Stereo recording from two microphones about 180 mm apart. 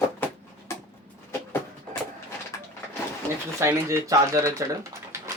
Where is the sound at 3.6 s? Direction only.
15° right (ahead or behind).